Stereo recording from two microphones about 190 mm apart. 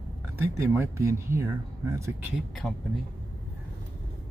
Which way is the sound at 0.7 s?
15° right (ahead or behind).